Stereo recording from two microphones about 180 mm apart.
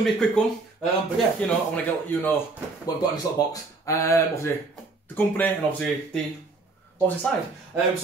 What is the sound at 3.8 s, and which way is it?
A man's voice, 15° left (ahead or behind).